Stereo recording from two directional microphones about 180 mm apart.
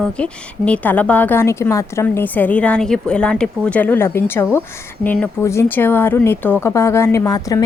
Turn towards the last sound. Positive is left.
turn(degrees=20)  # may be behind; listen again after turning